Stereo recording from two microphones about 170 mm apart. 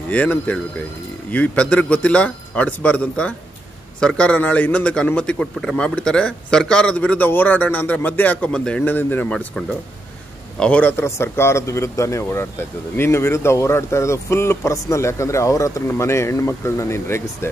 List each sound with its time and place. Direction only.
0.1 s a man's voice: 10° left (ahead or behind)